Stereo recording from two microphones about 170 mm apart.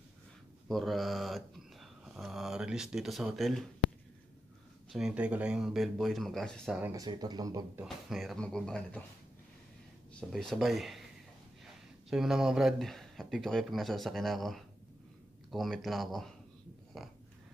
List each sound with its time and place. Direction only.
0.7 s speech: centre (ahead or behind)
4.9 s speech: 5° right (ahead or behind)
6.8 s speech: 20° right (ahead or behind)
7.8 s speech: centre (ahead or behind)
10.3 s speech: centre (ahead or behind)
12.1 s speech: 5° right (ahead or behind)